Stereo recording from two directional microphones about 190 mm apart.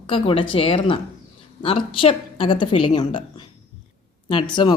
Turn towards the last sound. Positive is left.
turn(degrees=25)  # may be behind; listen again after turning